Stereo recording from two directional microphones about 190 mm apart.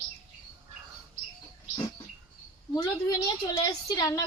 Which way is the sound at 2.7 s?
20° left (ahead or behind).